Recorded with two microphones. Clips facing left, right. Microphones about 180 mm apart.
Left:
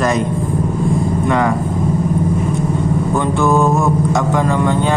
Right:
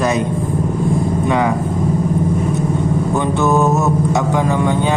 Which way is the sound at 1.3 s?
20° right (ahead or behind).